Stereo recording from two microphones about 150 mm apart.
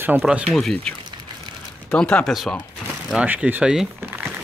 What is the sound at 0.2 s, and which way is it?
Speech, centre (ahead or behind).